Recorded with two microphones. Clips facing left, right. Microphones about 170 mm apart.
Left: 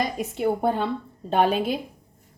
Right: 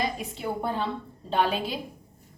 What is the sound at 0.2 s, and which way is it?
A woman's voice, 55° left (ahead or behind).